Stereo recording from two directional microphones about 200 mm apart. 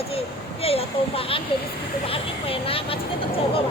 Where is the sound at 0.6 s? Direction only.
30° left (ahead or behind).